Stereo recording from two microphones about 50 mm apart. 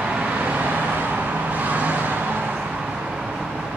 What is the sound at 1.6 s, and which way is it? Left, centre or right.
Vehicle, right.